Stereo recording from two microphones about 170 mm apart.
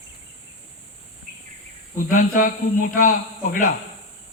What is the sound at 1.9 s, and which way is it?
A man's voice, 50° left (ahead or behind).